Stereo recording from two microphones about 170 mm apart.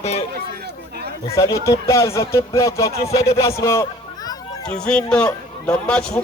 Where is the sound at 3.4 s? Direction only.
15° left (ahead or behind).